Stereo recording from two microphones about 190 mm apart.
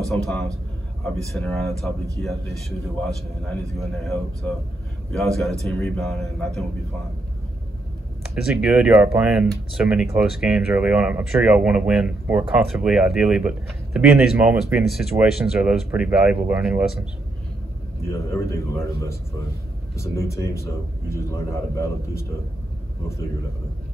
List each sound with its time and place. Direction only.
0.1 s speech: centre (ahead or behind)
3.7 s speech: centre (ahead or behind)
8.5 s speech: 5° right (ahead or behind)
18.1 s a man's voice: 15° left (ahead or behind)